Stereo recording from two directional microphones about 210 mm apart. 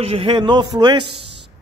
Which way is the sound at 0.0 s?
25° right (ahead or behind).